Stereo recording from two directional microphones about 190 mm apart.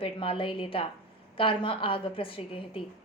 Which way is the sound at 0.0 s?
30° left (ahead or behind).